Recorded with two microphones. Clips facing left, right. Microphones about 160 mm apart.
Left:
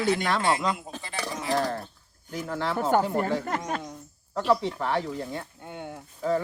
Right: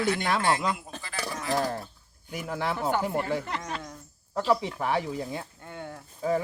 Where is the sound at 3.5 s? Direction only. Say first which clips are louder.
Left 4 dB; 45° left (ahead or behind).